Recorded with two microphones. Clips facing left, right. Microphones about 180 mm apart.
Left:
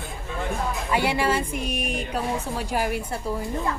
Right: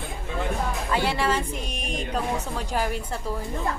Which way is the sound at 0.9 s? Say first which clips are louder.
Left 2 dB; 10° left (ahead or behind).